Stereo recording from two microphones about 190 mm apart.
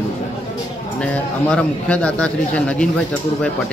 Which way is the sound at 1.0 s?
5° left (ahead or behind).